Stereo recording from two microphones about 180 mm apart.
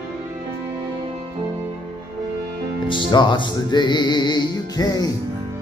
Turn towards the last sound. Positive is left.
turn(degrees=20)  # may be behind; listen again after turning